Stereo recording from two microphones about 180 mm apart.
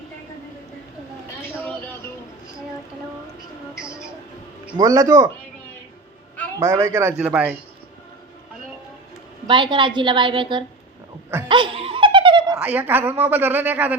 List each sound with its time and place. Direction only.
1.4 s vehicle: 10° left (ahead or behind)
4.8 s a woman's voice: 20° right (ahead or behind)
6.6 s speech: 15° right (ahead or behind)
9.5 s a woman's voice: 25° right (ahead or behind)
11.4 s laughter: 25° right (ahead or behind)
12.5 s speech: 10° right (ahead or behind)